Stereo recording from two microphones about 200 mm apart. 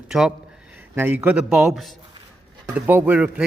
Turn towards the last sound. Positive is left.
turn(degrees=-5)  # may be behind; listen again after turning